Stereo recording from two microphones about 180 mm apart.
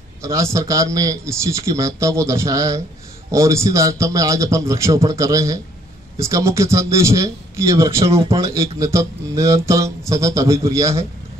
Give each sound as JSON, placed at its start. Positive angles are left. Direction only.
{"t": 0.2, "sound": "a man's voice", "side_deg": -15}